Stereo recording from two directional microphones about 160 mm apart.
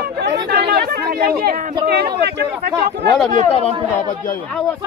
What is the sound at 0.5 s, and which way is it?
Speech, 70° right (ahead or behind).